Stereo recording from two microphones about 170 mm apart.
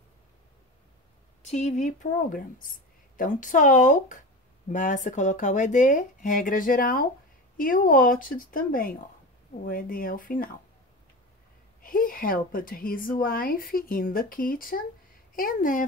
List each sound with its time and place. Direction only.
1.4 s speech: 40° left (ahead or behind)
11.8 s speech: 55° left (ahead or behind)